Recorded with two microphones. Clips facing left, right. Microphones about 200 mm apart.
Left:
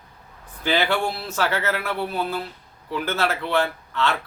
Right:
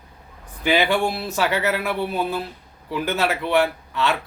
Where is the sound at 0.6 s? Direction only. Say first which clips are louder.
Right 3 dB; 15° right (ahead or behind).